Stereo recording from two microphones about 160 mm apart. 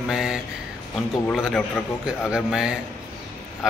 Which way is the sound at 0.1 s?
5° right (ahead or behind).